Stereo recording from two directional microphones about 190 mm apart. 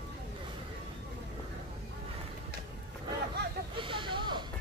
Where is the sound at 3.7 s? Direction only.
25° right (ahead or behind).